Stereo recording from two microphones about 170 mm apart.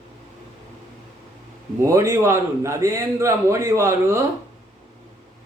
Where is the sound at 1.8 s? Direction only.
15° right (ahead or behind).